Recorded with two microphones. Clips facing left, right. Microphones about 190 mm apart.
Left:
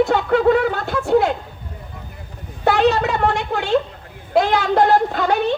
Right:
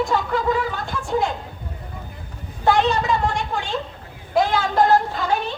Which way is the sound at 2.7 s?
65° left (ahead or behind).